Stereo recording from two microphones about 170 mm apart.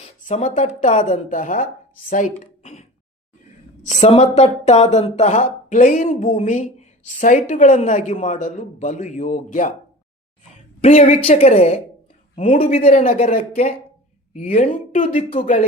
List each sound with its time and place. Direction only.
0.0 s speech: 45° left (ahead or behind)
3.8 s speech: 40° left (ahead or behind)
10.8 s speech: 40° left (ahead or behind)